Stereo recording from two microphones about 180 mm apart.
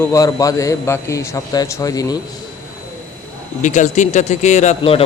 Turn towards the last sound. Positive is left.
turn(degrees=30)  # may be behind; listen again after turning